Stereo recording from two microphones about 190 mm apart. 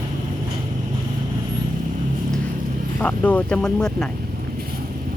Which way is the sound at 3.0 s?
5° left (ahead or behind).